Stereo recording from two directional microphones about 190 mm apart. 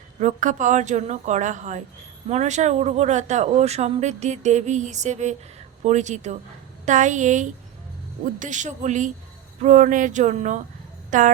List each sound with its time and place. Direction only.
0.2 s speech: 40° right (ahead or behind)